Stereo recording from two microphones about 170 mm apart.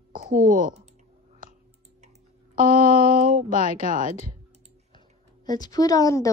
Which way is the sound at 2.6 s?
40° left (ahead or behind).